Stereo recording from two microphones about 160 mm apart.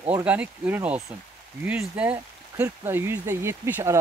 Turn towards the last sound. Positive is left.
turn(degrees=-15)  # may be behind; listen again after turning